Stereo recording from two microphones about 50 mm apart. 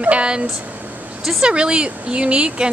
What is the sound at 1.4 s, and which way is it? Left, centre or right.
A woman's voice, centre.